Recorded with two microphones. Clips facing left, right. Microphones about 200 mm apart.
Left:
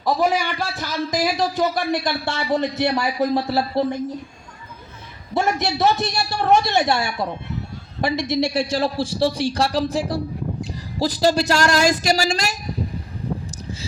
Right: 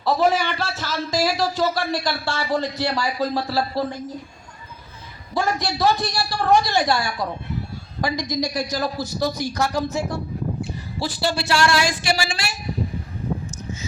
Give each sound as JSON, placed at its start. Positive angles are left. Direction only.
{"t": 0.0, "sound": "speech", "side_deg": 15}
{"t": 5.3, "sound": "speech", "side_deg": 25}